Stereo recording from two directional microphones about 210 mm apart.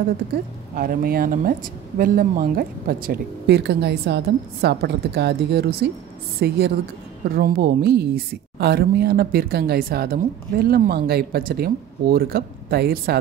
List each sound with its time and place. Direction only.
0.7 s a woman's voice: 45° right (ahead or behind)